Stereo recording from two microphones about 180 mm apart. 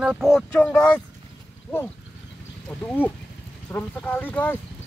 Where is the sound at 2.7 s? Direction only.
Centre (ahead or behind).